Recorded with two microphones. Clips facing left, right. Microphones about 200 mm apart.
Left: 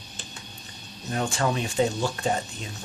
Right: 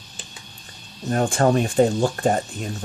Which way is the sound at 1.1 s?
50° right (ahead or behind).